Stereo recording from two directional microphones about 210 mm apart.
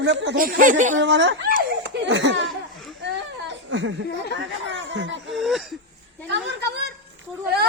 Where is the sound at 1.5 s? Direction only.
55° right (ahead or behind).